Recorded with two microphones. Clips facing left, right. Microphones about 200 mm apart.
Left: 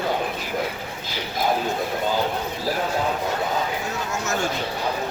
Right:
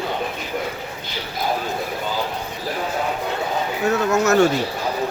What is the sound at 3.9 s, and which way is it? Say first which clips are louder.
Speech: right 10 dB; 65° right (ahead or behind).